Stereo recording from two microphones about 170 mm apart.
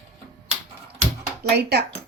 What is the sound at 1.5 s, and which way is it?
Speech, 70° right (ahead or behind).